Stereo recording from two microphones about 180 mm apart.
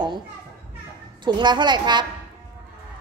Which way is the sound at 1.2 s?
25° right (ahead or behind).